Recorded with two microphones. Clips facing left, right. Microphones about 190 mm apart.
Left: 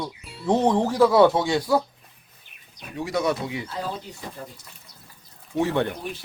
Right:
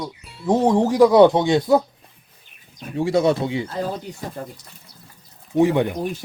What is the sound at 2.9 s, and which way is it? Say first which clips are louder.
Speech: right 7 dB; 30° right (ahead or behind).